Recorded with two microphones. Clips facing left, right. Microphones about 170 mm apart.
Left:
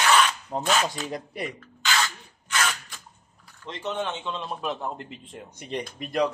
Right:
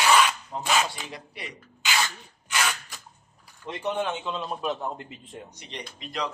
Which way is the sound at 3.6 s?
15° right (ahead or behind).